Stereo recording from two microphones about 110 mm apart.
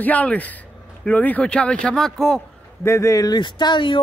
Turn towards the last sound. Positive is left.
turn(degrees=45)  # may be behind; listen again after turning